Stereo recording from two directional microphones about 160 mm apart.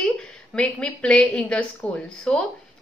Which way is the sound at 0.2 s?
5° left (ahead or behind).